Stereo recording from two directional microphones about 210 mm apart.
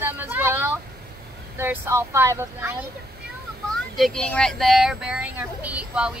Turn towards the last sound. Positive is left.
turn(degrees=-5)  # may be behind; listen again after turning